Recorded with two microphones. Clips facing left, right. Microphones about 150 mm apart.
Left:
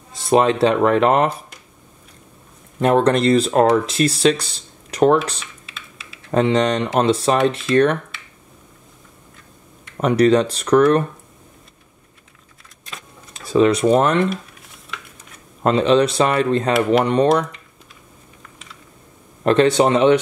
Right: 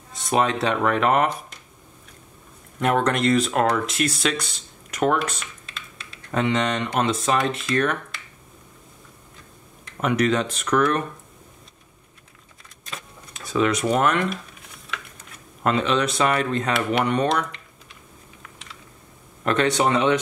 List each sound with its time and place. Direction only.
0.1 s speech: 30° left (ahead or behind)
2.8 s speech: 30° left (ahead or behind)
5.7 s a sound: 5° left (ahead or behind)
6.3 s speech: 35° left (ahead or behind)
9.9 s speech: 35° left (ahead or behind)
13.3 s speech: 30° left (ahead or behind)
15.6 s speech: 30° left (ahead or behind)
18.4 s typing: centre (ahead or behind)
19.4 s speech: 30° left (ahead or behind)